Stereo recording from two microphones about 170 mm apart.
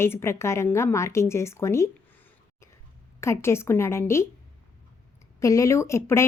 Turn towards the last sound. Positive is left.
turn(degrees=15)  # may be behind; listen again after turning